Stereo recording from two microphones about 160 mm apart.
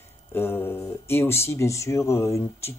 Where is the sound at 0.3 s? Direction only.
15° left (ahead or behind).